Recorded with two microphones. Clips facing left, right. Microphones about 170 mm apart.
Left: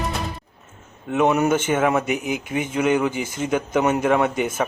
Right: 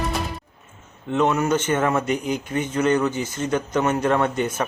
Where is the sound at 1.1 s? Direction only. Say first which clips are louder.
Left 2 dB; 15° left (ahead or behind).